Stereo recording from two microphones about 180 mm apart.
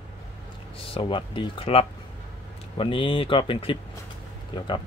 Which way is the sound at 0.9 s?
30° left (ahead or behind).